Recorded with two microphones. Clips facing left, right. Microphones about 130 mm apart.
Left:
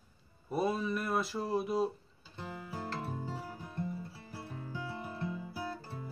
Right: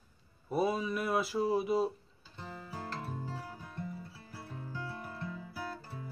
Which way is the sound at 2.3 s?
15° left (ahead or behind).